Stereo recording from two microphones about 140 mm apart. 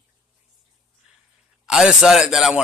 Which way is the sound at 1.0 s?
5° right (ahead or behind).